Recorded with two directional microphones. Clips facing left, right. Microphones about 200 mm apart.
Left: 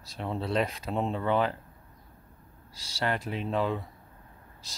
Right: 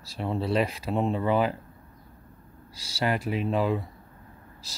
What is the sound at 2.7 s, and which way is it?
Speech, 10° right (ahead or behind).